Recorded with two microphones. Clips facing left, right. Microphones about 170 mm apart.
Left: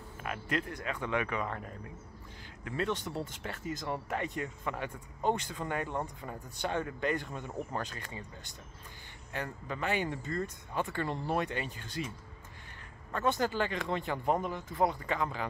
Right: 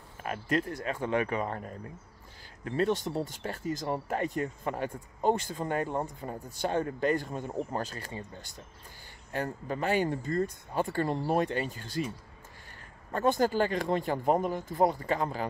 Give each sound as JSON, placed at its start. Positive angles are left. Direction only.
{"t": 0.2, "sound": "speech", "side_deg": -40}
{"t": 2.6, "sound": "speech", "side_deg": -40}
{"t": 13.1, "sound": "speech", "side_deg": -40}